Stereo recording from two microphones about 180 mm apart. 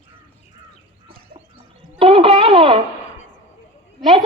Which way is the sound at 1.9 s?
30° right (ahead or behind).